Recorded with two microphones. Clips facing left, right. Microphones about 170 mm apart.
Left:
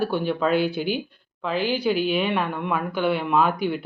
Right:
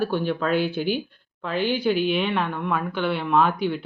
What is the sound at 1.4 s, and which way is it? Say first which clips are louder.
A woman's voice: even; centre (ahead or behind).